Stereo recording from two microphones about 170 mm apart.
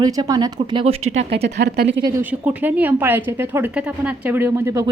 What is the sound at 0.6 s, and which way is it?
Speech, 35° right (ahead or behind).